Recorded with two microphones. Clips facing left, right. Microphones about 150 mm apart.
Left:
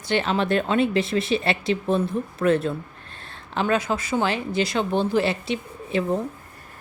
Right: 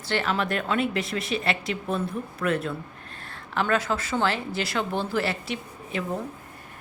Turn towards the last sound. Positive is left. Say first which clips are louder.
# left 6 dB
turn(degrees=25)  # may be behind; listen again after turning